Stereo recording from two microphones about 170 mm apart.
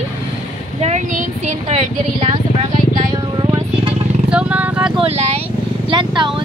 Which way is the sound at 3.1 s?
25° right (ahead or behind).